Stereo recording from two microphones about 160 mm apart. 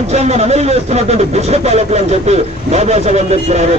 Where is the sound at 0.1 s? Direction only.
40° right (ahead or behind).